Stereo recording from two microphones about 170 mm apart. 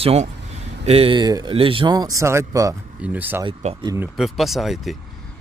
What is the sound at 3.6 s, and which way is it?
Speech, 40° right (ahead or behind).